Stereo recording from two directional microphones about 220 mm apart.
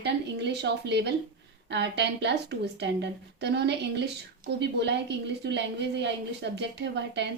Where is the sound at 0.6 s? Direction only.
50° right (ahead or behind).